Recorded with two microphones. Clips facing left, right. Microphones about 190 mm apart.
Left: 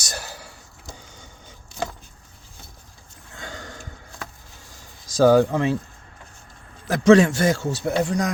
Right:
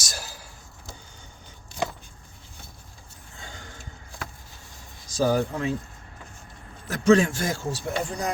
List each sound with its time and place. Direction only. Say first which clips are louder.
0.0 s whispering: left 4 dB; 65° left (ahead or behind)
3.3 s a sound: left 7 dB; 80° left
5.0 s speech: left 8 dB; 90° left
6.8 s a man's voice: left 5 dB; 90° left